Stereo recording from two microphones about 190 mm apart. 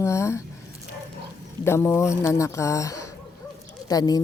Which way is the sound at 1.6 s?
15° left (ahead or behind).